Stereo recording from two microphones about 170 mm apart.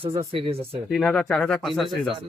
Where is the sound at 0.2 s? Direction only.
35° right (ahead or behind).